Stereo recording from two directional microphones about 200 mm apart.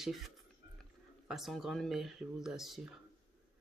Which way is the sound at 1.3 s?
Centre (ahead or behind).